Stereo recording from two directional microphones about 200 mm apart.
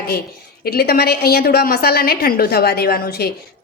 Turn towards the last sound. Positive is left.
turn(degrees=50)  # may be behind; listen again after turning